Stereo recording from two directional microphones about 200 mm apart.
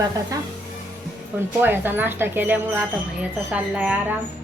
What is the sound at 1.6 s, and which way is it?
A woman's voice, 10° right (ahead or behind).